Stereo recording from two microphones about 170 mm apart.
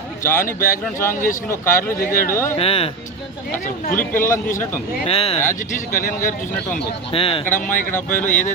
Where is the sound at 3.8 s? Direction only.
55° left (ahead or behind).